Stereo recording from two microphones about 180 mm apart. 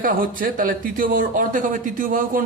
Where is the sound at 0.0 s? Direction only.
50° right (ahead or behind).